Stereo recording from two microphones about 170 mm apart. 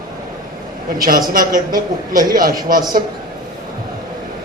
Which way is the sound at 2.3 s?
55° right (ahead or behind).